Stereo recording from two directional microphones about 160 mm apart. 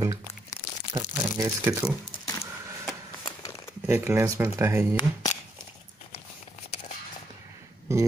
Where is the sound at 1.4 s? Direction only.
20° right (ahead or behind).